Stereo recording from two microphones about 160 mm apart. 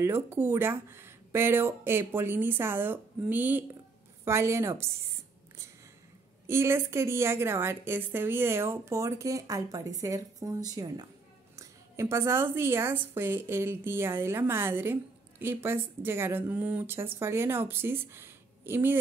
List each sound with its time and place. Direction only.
0.0 s a woman's voice: 15° right (ahead or behind)
6.4 s a woman's voice: 15° right (ahead or behind)